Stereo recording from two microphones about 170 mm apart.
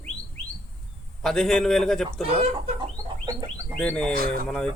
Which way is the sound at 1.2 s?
5° left (ahead or behind).